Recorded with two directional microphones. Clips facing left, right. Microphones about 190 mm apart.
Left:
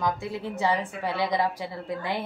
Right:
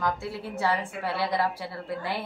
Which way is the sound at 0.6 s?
15° left (ahead or behind).